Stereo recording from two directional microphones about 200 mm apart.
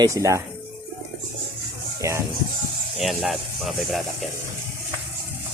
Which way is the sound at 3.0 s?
Centre (ahead or behind).